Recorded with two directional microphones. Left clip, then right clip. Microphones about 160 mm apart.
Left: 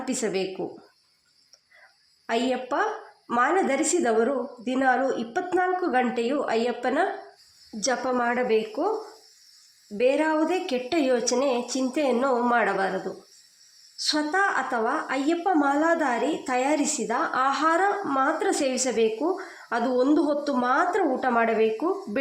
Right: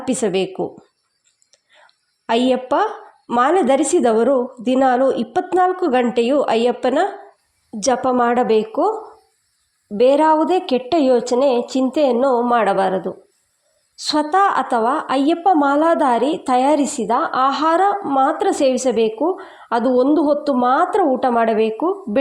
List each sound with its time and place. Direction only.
0.0 s a woman's voice: 40° right (ahead or behind)
2.2 s a woman's voice: 40° right (ahead or behind)
10.0 s a woman's voice: 40° right (ahead or behind)